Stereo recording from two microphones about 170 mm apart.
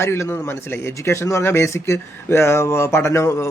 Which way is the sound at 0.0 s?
15° left (ahead or behind).